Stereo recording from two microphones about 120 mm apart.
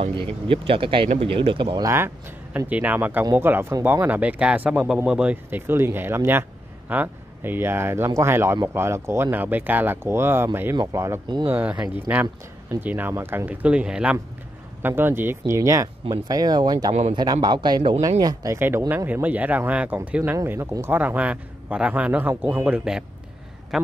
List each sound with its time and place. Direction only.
0.0 s speech: 45° right (ahead or behind)
1.9 s speech: 20° right (ahead or behind)
11.4 s speech: 15° right (ahead or behind); by 18.6 s 30° right (ahead or behind)
18.6 s speech: 20° right (ahead or behind)
20.3 s speech: 25° right (ahead or behind)
23.7 s a man's voice: centre (ahead or behind)